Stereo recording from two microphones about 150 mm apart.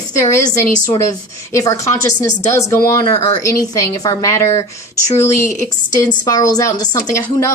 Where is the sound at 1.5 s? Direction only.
20° left (ahead or behind).